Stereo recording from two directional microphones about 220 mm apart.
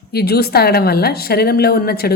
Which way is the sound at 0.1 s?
45° left (ahead or behind).